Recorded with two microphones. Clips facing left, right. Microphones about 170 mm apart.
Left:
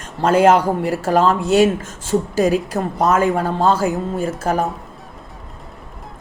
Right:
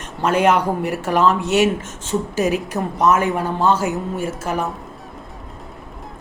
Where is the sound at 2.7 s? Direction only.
50° left (ahead or behind).